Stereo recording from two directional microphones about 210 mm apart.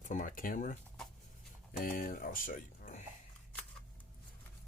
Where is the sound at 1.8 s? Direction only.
40° left (ahead or behind).